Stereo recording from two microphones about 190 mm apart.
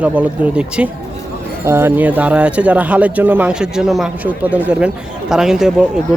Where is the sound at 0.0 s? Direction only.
5° right (ahead or behind).